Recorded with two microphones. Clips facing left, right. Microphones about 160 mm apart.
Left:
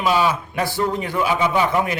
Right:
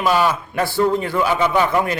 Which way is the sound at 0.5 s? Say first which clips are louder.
Right 4 dB; 15° left (ahead or behind).